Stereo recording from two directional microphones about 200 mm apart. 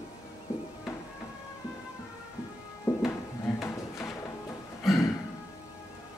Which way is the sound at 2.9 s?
10° left (ahead or behind).